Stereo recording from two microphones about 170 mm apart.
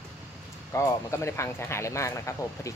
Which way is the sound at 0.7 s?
15° left (ahead or behind).